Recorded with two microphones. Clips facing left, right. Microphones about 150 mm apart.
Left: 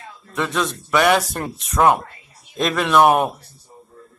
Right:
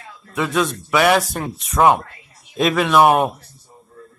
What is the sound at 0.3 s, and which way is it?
Speech, centre (ahead or behind).